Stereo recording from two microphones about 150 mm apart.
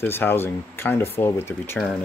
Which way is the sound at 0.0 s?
15° left (ahead or behind).